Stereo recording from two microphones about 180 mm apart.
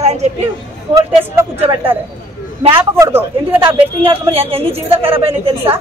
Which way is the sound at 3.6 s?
30° right (ahead or behind).